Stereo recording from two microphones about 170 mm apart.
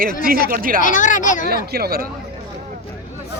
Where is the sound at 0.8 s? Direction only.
50° left (ahead or behind).